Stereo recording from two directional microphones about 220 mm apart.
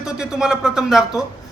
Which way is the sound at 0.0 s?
5° right (ahead or behind).